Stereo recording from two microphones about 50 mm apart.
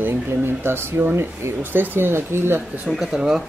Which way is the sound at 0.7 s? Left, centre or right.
Right.